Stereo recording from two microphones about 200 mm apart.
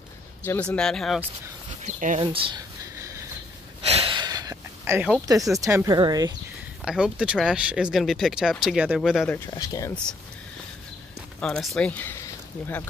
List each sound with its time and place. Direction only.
0.4 s speech: 5° left (ahead or behind)
1.8 s speech: 35° right (ahead or behind)
3.8 s a sound: 30° right (ahead or behind); by 5.2 s 5° right (ahead or behind)
5.6 s speech: 15° right (ahead or behind)
6.8 s speech: 5° right (ahead or behind)
9.5 s speech: 15° left (ahead or behind)
11.3 s speech: 5° left (ahead or behind)